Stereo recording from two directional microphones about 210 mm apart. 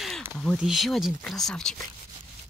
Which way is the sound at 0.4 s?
Centre (ahead or behind).